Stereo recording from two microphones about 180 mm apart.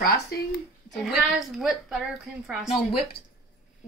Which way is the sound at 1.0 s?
Centre (ahead or behind).